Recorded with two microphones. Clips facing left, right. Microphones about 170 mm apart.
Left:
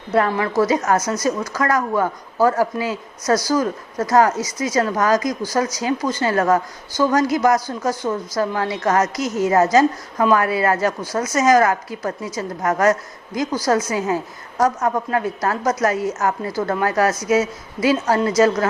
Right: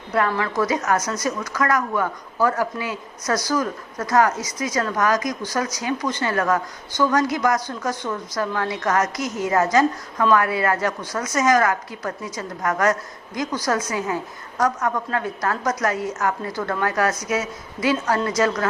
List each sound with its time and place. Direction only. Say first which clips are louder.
0.1 s a woman's voice: left 4 dB; 30° left (ahead or behind)